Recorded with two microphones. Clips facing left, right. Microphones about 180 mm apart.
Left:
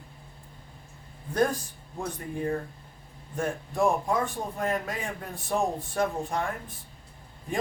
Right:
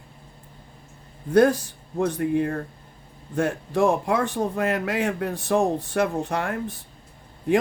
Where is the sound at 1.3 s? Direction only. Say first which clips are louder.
Right 8 dB; 75° right (ahead or behind).